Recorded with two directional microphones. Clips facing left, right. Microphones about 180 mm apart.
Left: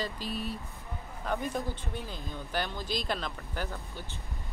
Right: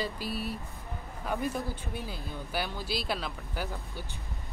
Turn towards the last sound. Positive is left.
turn(degrees=-10)  # may be behind; listen again after turning